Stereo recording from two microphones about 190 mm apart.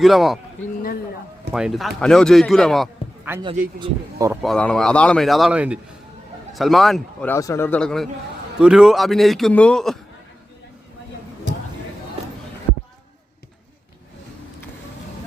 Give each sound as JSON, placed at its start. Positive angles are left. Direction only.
{"t": 0.0, "sound": "a man's voice", "side_deg": 0}
{"t": 1.5, "sound": "a man's voice", "side_deg": 0}
{"t": 3.3, "sound": "speech", "side_deg": -10}
{"t": 3.8, "sound": "speech", "side_deg": -25}
{"t": 4.4, "sound": "a man's voice", "side_deg": 5}
{"t": 7.3, "sound": "a man's voice", "side_deg": 15}